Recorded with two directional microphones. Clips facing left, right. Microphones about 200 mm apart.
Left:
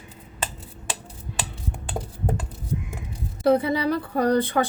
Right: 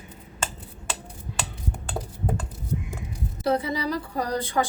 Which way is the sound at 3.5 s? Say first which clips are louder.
Left 5 dB; 60° left (ahead or behind).